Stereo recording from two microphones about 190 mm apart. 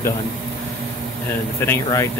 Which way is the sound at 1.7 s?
15° left (ahead or behind).